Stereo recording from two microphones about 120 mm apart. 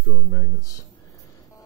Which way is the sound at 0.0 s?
30° left (ahead or behind).